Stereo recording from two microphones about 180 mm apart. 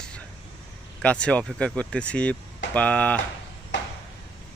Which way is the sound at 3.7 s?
90° left.